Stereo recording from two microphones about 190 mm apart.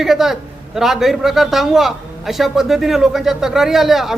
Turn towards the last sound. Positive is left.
turn(degrees=0)  # may be behind; listen again after turning